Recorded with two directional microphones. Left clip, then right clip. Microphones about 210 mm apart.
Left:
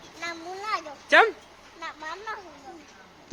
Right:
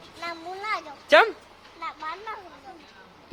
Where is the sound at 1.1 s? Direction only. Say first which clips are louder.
Right 1 dB; 20° right (ahead or behind).